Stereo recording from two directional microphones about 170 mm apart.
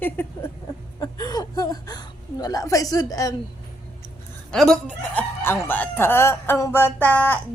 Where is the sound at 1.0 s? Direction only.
20° left (ahead or behind).